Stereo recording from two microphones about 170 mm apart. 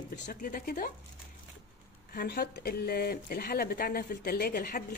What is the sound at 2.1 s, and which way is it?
Speech, 70° left (ahead or behind).